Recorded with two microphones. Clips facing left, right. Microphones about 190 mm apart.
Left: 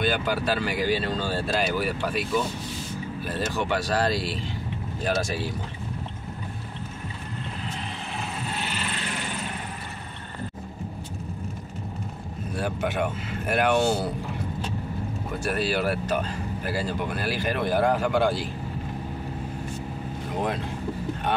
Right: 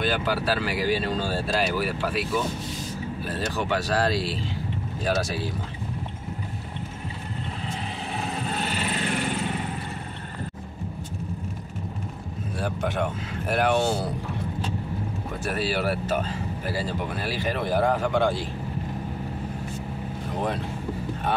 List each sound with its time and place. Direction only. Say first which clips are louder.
0.0 s speech: even; centre (ahead or behind)
3.3 s speech: left 1 dB; centre (ahead or behind)
8.5 s vehicle: right 3 dB; 40° right (ahead or behind)
12.5 s speech: left 1 dB; centre (ahead or behind)
15.4 s speech: left 1 dB; 5° right (ahead or behind)